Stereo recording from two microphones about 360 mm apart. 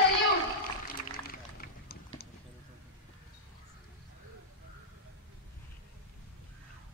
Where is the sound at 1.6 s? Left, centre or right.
Left.